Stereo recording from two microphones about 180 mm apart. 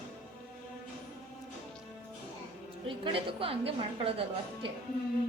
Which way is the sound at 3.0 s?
30° right (ahead or behind).